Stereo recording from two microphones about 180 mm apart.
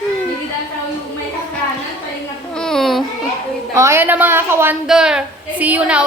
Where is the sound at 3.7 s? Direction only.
15° right (ahead or behind).